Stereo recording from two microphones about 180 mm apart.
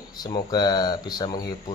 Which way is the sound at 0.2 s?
20° left (ahead or behind).